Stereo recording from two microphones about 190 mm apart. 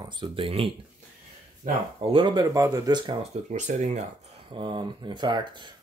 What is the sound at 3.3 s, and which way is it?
Speech, 40° right (ahead or behind).